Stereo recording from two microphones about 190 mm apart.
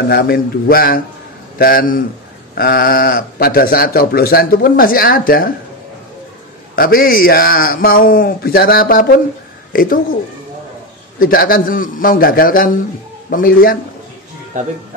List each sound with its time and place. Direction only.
0.1 s speech: 55° left (ahead or behind)
6.7 s speech: 50° left (ahead or behind)
11.1 s speech: 50° left (ahead or behind)
14.5 s speech: 40° right (ahead or behind)